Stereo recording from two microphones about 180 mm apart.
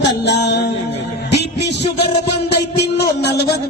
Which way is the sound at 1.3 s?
70° left (ahead or behind).